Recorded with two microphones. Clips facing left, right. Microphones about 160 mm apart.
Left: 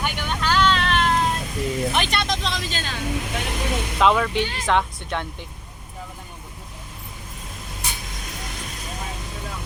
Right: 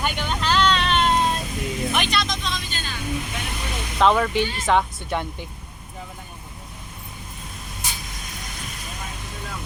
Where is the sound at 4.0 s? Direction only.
Centre (ahead or behind).